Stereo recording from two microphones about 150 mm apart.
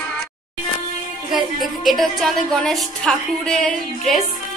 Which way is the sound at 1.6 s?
Centre (ahead or behind).